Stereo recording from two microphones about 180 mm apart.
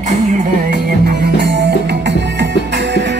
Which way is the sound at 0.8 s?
65° right (ahead or behind).